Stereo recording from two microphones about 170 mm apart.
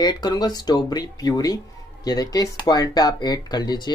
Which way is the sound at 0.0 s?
25° left (ahead or behind).